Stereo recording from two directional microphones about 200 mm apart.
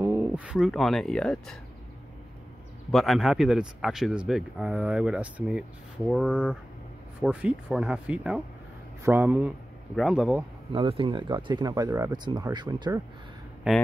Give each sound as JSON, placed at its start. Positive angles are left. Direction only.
{"t": 0.0, "sound": "speech", "side_deg": -10}
{"t": 2.9, "sound": "speech", "side_deg": 0}
{"t": 10.7, "sound": "speech", "side_deg": -25}